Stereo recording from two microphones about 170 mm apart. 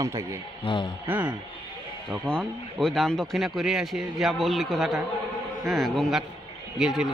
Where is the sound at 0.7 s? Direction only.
30° left (ahead or behind).